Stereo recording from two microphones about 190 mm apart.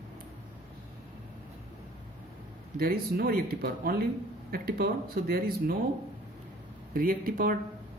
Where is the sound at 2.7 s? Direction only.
50° right (ahead or behind).